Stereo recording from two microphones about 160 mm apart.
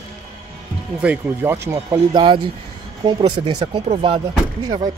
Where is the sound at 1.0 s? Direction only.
15° right (ahead or behind).